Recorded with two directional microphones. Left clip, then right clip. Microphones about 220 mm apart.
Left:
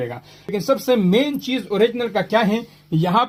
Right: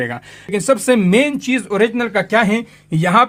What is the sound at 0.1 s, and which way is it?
Speech, 40° right (ahead or behind).